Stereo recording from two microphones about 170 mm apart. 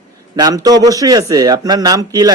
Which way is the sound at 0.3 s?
25° right (ahead or behind).